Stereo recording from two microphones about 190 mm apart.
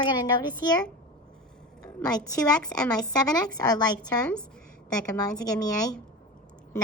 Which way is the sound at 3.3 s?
20° left (ahead or behind).